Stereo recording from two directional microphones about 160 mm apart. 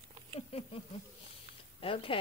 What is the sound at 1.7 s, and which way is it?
Speech, 35° left (ahead or behind).